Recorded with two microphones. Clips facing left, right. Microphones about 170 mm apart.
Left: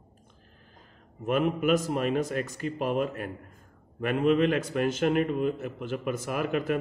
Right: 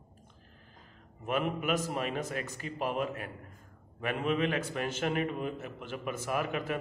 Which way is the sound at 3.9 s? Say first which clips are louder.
Left 7 dB; 50° left (ahead or behind).